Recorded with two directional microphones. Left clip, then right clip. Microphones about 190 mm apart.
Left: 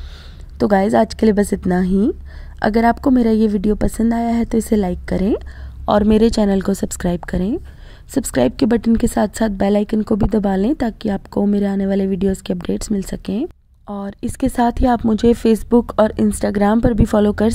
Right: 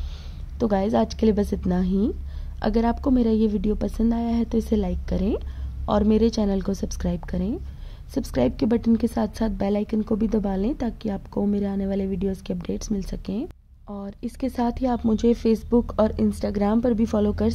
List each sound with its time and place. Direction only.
0.6 s a woman's voice: 45° left (ahead or behind)